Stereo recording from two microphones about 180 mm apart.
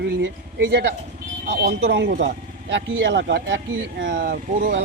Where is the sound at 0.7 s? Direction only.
70° right (ahead or behind).